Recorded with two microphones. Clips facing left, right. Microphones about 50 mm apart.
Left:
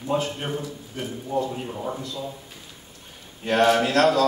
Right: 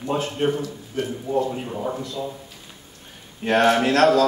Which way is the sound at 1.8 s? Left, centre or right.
Centre.